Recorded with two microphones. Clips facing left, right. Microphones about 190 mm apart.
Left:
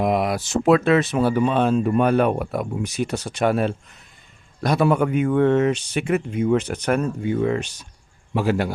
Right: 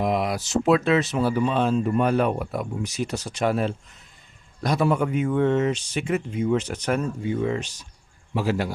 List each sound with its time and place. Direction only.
0.0 s a man's voice: 55° left (ahead or behind)